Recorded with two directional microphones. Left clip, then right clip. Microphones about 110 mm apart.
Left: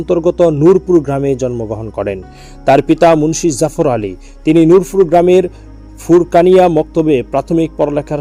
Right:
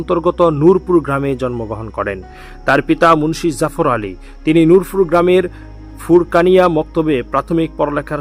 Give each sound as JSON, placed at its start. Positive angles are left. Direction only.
{"t": 0.0, "sound": "a man's voice", "side_deg": 20}
{"t": 2.6, "sound": "speech", "side_deg": 25}